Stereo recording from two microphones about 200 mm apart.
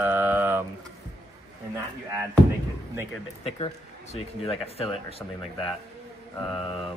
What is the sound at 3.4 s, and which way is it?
Speech, 30° left (ahead or behind).